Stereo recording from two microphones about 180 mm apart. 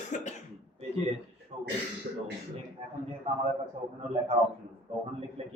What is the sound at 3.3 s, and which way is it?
Speech, 35° right (ahead or behind).